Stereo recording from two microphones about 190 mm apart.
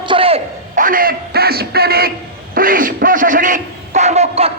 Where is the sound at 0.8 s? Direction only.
45° right (ahead or behind).